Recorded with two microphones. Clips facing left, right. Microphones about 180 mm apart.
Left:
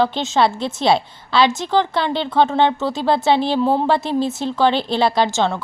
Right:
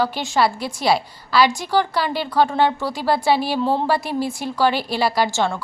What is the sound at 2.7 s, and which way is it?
A woman's voice, 20° left (ahead or behind).